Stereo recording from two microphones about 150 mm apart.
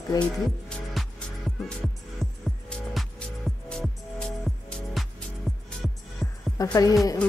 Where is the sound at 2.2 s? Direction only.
5° left (ahead or behind).